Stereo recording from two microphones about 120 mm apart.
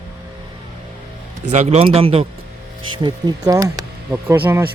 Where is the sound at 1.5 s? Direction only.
70° right (ahead or behind).